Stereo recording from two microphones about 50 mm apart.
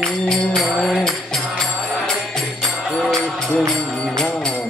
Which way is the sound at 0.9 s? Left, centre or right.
Centre.